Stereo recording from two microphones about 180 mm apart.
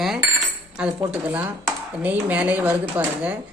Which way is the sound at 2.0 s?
10° right (ahead or behind).